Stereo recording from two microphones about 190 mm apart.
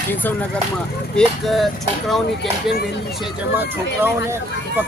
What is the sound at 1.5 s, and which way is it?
Speech, centre (ahead or behind).